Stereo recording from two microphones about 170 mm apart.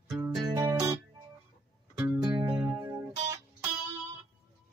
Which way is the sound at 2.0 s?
10° right (ahead or behind).